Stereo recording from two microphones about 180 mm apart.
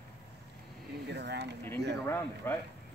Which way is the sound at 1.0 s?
70° right (ahead or behind).